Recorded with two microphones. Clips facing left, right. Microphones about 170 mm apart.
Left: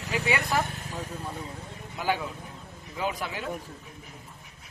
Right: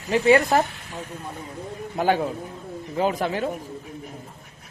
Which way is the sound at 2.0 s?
50° right (ahead or behind).